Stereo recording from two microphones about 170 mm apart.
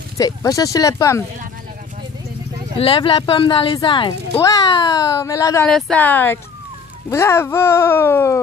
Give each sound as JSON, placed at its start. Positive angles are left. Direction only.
{"t": 0.2, "sound": "speech", "side_deg": 20}
{"t": 2.8, "sound": "speech", "side_deg": 30}
{"t": 5.7, "sound": "speech", "side_deg": 5}